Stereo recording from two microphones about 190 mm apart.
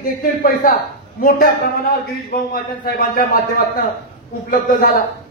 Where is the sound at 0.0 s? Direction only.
50° left (ahead or behind).